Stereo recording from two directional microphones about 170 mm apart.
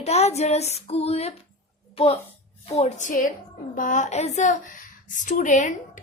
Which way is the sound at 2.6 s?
40° left (ahead or behind).